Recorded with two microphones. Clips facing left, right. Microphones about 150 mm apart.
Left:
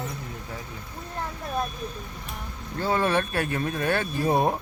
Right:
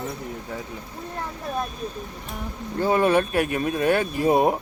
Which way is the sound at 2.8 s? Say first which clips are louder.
Right 5 dB; 15° right (ahead or behind).